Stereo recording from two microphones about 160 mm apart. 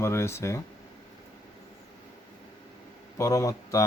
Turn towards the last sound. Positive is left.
turn(degrees=20)  # may be behind; listen again after turning